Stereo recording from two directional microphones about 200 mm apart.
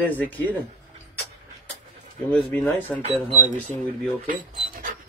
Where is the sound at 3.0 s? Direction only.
30° right (ahead or behind).